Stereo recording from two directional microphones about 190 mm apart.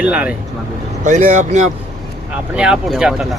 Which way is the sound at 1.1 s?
40° right (ahead or behind).